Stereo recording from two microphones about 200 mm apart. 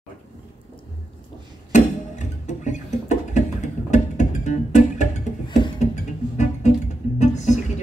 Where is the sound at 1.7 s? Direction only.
35° left (ahead or behind).